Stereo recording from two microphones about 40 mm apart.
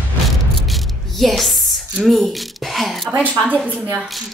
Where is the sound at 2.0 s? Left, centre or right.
Centre.